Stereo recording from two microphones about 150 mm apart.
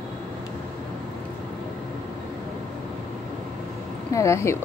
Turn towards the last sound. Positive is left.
turn(degrees=20)  # may be behind; listen again after turning